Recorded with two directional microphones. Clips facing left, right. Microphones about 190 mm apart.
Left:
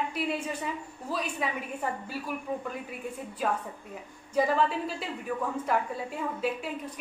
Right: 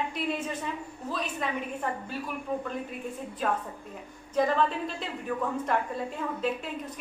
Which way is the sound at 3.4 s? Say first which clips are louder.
Even; 5° left (ahead or behind).